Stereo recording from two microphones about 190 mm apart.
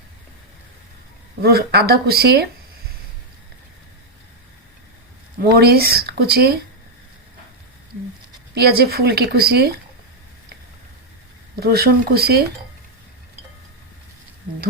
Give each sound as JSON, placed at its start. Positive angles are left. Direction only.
{"t": 1.4, "sound": "speech", "side_deg": -55}
{"t": 5.4, "sound": "speech", "side_deg": -55}
{"t": 8.5, "sound": "speech", "side_deg": -55}
{"t": 11.5, "sound": "speech", "side_deg": -55}